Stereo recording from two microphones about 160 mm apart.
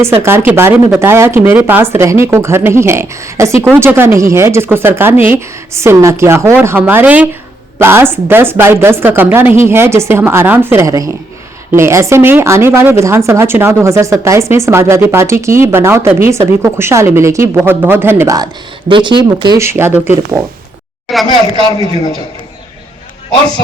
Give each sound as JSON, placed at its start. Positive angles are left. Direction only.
{"t": 0.2, "sound": "speech", "side_deg": -15}
{"t": 18.9, "sound": "speech", "side_deg": -30}
{"t": 19.5, "sound": "speech", "side_deg": -15}
{"t": 21.1, "sound": "speech", "side_deg": 0}